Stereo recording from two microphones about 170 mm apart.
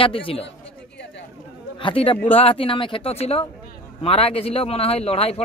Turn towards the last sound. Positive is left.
turn(degrees=35)  # may be behind; listen again after turning